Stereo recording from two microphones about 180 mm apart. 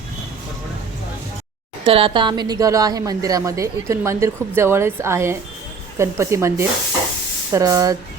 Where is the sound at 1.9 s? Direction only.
30° right (ahead or behind).